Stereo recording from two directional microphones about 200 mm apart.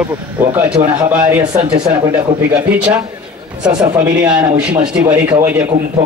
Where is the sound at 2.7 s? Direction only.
5° right (ahead or behind).